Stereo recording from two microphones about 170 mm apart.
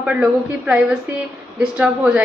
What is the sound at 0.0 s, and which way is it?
A woman's voice, 5° right (ahead or behind).